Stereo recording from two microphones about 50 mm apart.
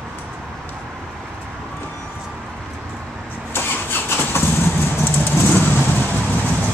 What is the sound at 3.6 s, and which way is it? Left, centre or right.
Vehicle, left.